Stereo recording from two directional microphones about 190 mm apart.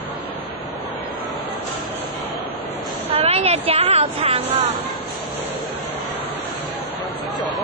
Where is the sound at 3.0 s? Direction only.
30° right (ahead or behind).